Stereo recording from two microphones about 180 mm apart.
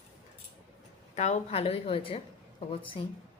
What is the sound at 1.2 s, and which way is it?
A woman's voice, 40° left (ahead or behind).